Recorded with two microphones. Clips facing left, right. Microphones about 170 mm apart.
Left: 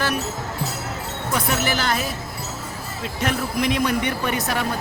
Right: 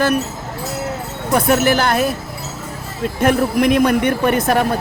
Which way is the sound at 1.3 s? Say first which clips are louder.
Right 9 dB; 50° right (ahead or behind).